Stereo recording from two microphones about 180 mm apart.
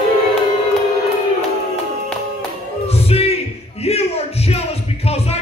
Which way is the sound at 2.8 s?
35° left (ahead or behind).